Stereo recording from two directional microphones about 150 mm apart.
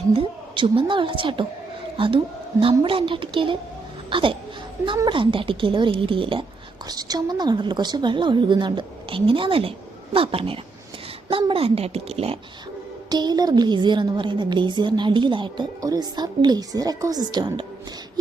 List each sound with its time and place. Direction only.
0.1 s a woman's voice: 35° right (ahead or behind)
13.1 s a woman's voice: 30° right (ahead or behind)